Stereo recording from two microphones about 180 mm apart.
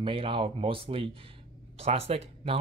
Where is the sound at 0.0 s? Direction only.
30° right (ahead or behind).